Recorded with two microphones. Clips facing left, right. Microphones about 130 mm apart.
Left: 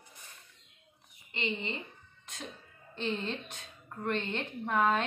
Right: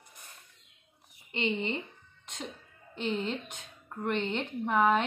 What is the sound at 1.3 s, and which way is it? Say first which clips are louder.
Speech: right 5 dB; 30° right (ahead or behind).